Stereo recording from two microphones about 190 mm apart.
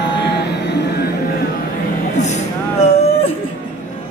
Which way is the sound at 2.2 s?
35° left (ahead or behind).